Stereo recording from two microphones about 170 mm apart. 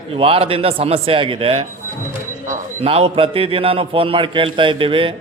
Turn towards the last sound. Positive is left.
turn(degrees=-30)  # may be behind; listen again after turning